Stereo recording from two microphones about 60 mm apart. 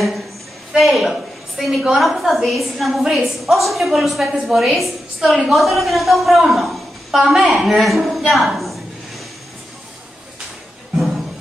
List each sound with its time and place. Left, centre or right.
0.7 s a woman's voice: centre